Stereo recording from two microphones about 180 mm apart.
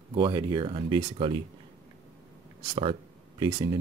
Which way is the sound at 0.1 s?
25° right (ahead or behind).